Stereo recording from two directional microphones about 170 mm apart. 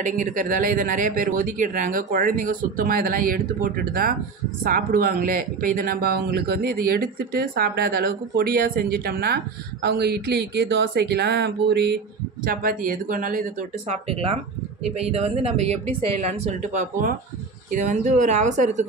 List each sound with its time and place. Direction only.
0.0 s speech: 50° right (ahead or behind)
9.8 s speech: 75° right (ahead or behind)
12.4 s speech: 55° right (ahead or behind)
15.0 s speech: 35° right (ahead or behind)